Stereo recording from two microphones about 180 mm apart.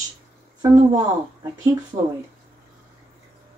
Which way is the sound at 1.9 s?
40° right (ahead or behind).